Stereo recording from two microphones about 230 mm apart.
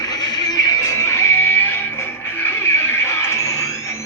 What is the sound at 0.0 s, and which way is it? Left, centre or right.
Music, centre.